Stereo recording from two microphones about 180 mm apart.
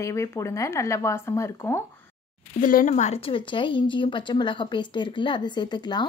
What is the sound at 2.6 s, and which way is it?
Speech, 50° left (ahead or behind).